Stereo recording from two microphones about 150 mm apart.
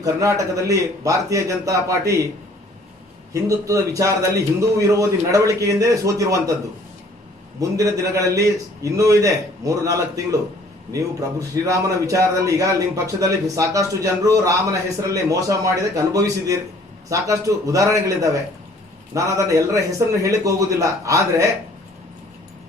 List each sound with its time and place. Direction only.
0.0 s a man's voice: 20° right (ahead or behind)
3.3 s a man's voice: 20° right (ahead or behind)
7.6 s a man's voice: 20° right (ahead or behind)